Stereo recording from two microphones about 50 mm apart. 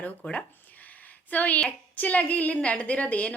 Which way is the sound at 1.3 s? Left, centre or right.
Left.